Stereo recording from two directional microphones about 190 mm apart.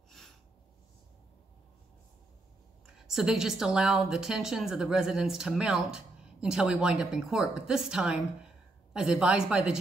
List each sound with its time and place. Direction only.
3.0 s a woman's voice: centre (ahead or behind)